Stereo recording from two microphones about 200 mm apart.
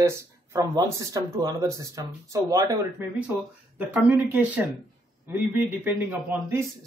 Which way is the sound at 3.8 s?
10° right (ahead or behind).